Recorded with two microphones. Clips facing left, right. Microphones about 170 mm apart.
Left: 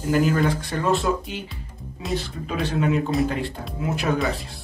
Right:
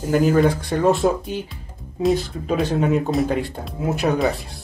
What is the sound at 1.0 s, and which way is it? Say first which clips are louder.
Speech: right 4 dB; 40° right (ahead or behind).